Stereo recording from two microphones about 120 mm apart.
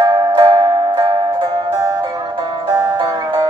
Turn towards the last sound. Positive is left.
turn(degrees=-40)  # may be behind; listen again after turning